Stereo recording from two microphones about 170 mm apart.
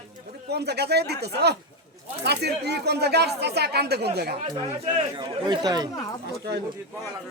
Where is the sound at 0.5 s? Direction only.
75° right (ahead or behind).